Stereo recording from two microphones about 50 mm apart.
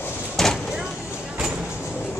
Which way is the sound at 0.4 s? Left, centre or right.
Centre.